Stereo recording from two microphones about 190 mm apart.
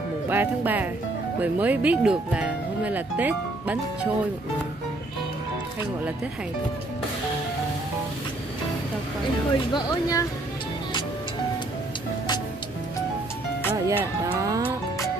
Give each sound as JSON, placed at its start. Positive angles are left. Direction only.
{"t": 0.3, "sound": "speech", "side_deg": -10}
{"t": 9.7, "sound": "speech", "side_deg": 20}
{"t": 13.8, "sound": "speech", "side_deg": -15}